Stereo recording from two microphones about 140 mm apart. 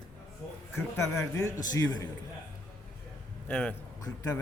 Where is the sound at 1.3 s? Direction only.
25° left (ahead or behind).